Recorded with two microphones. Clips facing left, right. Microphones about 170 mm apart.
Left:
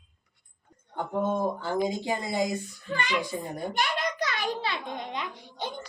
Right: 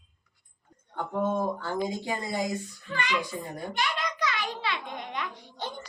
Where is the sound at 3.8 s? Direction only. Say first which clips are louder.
Left 1 dB; 45° left (ahead or behind).